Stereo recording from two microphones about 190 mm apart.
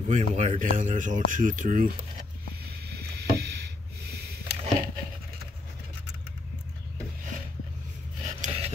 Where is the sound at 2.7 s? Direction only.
55° right (ahead or behind).